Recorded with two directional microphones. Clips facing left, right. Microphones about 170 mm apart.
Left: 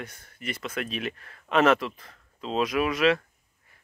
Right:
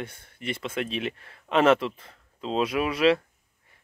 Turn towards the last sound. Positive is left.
turn(degrees=-30)  # may be behind; listen again after turning